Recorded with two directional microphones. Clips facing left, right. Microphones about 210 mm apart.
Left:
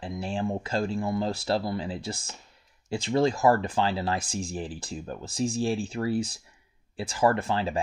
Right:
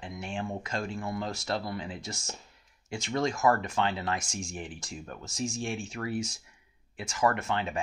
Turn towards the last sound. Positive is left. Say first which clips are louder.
# left 4 dB
turn(degrees=30)  # may be behind; listen again after turning